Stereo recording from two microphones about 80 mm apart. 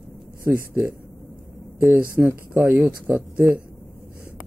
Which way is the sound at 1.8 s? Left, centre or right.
Centre.